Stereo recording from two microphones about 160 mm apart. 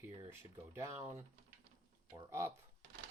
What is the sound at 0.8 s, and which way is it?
Speech, 15° right (ahead or behind).